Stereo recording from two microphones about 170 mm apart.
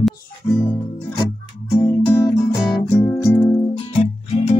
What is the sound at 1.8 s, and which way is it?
Music, 15° left (ahead or behind).